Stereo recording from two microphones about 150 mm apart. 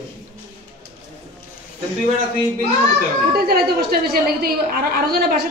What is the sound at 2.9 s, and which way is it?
A woman's voice, 90° right.